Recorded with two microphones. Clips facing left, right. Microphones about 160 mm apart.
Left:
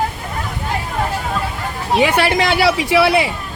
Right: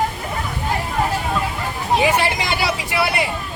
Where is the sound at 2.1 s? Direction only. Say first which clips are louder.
Left 5 dB; 90° left.